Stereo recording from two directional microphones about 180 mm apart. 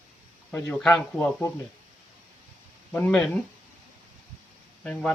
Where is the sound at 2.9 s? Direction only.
10° left (ahead or behind).